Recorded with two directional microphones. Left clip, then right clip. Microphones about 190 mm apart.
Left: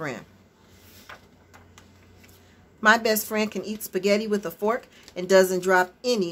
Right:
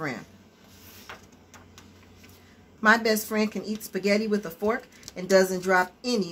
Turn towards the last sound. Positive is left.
turn(degrees=25)  # may be behind; listen again after turning